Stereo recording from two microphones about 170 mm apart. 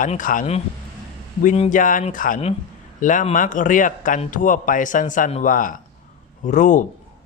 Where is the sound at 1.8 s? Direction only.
50° left (ahead or behind).